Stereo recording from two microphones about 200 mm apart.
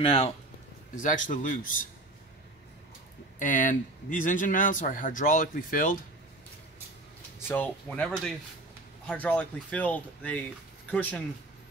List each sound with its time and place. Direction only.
0.0 s speech: 25° left (ahead or behind)
0.9 s speech: 40° left (ahead or behind)
3.3 s speech: 40° left (ahead or behind)
7.3 s speech: 10° left (ahead or behind)